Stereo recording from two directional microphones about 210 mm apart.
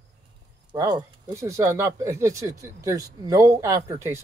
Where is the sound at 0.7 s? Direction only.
20° right (ahead or behind).